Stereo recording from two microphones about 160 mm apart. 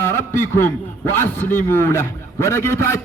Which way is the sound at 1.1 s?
15° left (ahead or behind).